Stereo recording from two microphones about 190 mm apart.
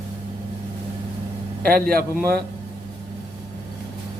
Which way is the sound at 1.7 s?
50° right (ahead or behind).